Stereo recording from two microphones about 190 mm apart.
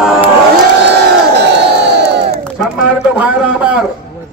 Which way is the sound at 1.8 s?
60° right (ahead or behind).